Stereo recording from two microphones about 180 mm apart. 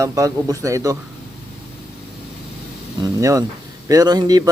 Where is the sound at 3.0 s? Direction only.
20° right (ahead or behind).